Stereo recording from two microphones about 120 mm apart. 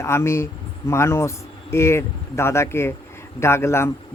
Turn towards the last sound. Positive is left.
turn(degrees=20)  # may be behind; listen again after turning